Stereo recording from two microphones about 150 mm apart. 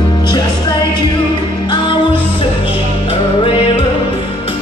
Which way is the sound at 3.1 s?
40° left (ahead or behind).